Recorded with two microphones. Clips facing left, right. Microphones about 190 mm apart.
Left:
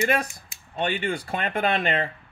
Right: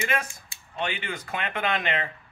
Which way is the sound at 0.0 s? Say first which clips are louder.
Left 5 dB; 35° left (ahead or behind).